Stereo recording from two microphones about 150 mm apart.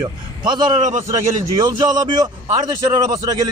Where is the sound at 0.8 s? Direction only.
55° right (ahead or behind).